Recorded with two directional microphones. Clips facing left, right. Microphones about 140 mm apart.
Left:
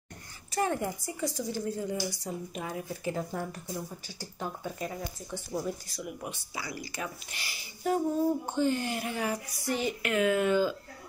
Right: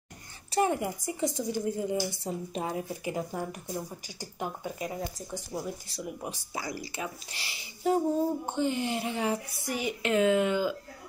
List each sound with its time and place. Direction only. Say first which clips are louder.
0.6 s a woman's voice: right 3 dB; 10° right (ahead or behind)
3.0 s speech: even; 10° right (ahead or behind)
5.9 s speech: right 1 dB; 30° right (ahead or behind)
6.5 s speech: right 5 dB; 40° right (ahead or behind)
7.0 s a woman's voice: right 1 dB; 30° right (ahead or behind)
9.7 s speech: left 2 dB; 15° right (ahead or behind)
10.0 s a woman's voice: right 3 dB; 25° right (ahead or behind)